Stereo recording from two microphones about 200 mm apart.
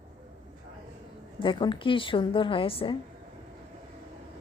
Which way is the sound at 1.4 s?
25° left (ahead or behind).